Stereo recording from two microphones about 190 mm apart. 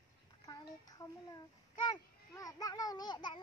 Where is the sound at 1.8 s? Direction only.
20° left (ahead or behind).